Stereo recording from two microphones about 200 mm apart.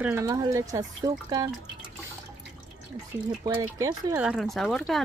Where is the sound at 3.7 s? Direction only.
15° right (ahead or behind).